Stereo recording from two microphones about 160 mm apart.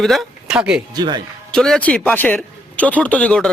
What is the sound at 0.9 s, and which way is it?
Speech, 25° right (ahead or behind).